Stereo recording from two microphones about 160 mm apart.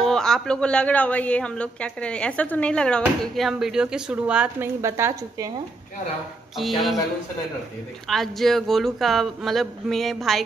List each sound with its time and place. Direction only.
0.0 s a man's voice: 5° left (ahead or behind)
4.8 s a woman's voice: 15° right (ahead or behind)
6.5 s a man's voice: centre (ahead or behind)
8.1 s a man's voice: centre (ahead or behind)